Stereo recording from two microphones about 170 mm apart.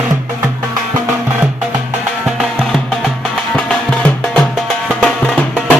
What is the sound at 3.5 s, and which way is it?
Music, 5° left (ahead or behind).